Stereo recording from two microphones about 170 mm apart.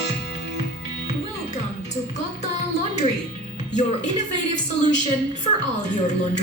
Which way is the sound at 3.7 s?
45° left (ahead or behind).